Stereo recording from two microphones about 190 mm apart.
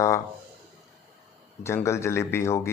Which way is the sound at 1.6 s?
15° left (ahead or behind).